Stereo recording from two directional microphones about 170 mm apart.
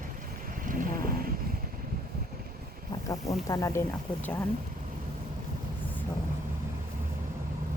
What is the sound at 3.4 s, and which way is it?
Speech, 20° left (ahead or behind).